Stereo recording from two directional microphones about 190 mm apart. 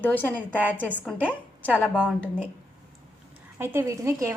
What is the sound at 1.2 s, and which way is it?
Speech, 10° right (ahead or behind).